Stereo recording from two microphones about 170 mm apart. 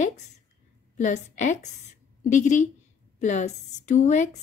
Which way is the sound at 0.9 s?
45° left (ahead or behind).